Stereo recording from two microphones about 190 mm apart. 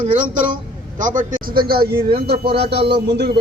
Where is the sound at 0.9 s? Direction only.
45° right (ahead or behind).